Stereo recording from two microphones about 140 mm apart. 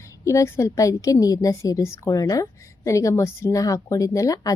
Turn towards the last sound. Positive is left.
turn(degrees=25)  # may be behind; listen again after turning